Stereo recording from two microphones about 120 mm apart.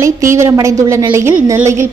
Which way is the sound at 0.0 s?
25° right (ahead or behind).